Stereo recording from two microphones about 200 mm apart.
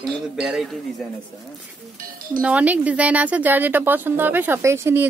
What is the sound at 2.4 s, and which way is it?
A woman's voice, 5° right (ahead or behind).